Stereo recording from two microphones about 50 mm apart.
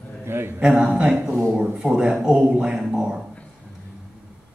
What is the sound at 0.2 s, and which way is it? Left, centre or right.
Speech, right.